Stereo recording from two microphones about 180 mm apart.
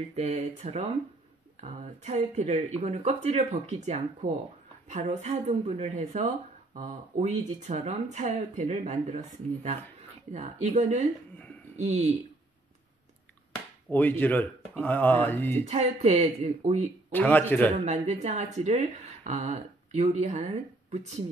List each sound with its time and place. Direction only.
0.1 s speech: 35° right (ahead or behind)
13.8 s speech: 10° left (ahead or behind)
15.6 s speech: 35° right (ahead or behind)
17.1 s speech: 10° left (ahead or behind)
17.7 s speech: 40° right (ahead or behind)